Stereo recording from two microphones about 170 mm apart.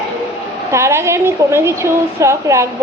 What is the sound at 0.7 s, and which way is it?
A woman's voice, 15° right (ahead or behind).